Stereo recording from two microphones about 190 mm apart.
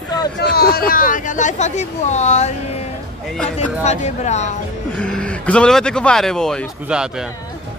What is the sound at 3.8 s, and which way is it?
Speech, 35° left (ahead or behind).